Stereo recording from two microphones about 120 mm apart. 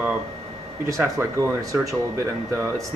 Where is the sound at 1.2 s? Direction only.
25° right (ahead or behind).